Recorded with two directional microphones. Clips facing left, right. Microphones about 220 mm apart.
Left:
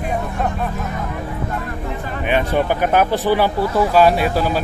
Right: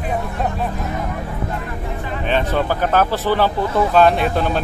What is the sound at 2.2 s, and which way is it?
Speech, 15° left (ahead or behind).